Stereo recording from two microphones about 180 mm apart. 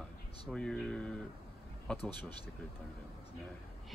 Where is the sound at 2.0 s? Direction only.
25° right (ahead or behind).